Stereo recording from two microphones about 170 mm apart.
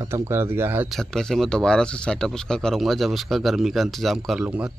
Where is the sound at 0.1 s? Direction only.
15° right (ahead or behind).